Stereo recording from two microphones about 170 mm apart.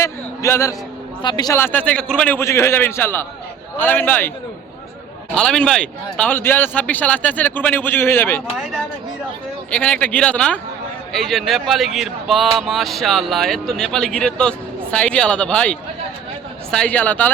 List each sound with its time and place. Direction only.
0.0 s a sound: 15° left (ahead or behind)
1.2 s speech: 25° left (ahead or behind)
5.3 s speech: 5° left (ahead or behind)
9.6 s speech: 5° left (ahead or behind)